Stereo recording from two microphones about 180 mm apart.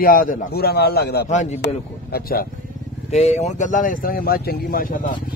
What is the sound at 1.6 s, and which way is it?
Speech, 60° left (ahead or behind).